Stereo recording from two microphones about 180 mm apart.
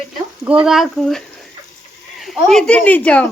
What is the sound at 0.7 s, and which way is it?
Speech, centre (ahead or behind).